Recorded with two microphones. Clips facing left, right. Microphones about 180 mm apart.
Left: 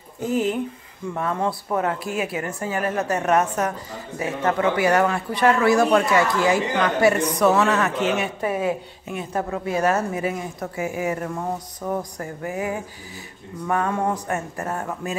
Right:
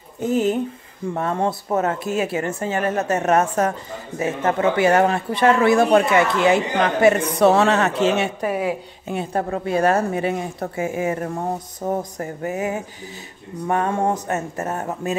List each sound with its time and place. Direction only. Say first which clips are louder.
1.1 s speech: right 2 dB; 30° right (ahead or behind)
8.4 s speech: right 1 dB; 15° right (ahead or behind)
9.0 s speech: right 4 dB; 30° right (ahead or behind)
11.8 s speech: right 4 dB; 25° right (ahead or behind)